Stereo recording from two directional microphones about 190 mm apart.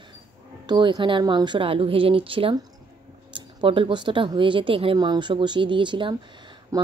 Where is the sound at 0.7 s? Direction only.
25° right (ahead or behind).